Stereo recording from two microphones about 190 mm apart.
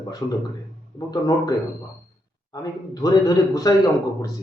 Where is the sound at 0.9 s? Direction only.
20° left (ahead or behind).